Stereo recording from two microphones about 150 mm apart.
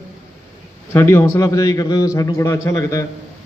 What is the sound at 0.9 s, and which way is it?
A man's voice, 15° left (ahead or behind).